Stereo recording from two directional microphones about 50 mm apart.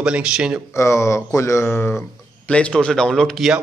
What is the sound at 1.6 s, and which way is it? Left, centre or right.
Speech, left.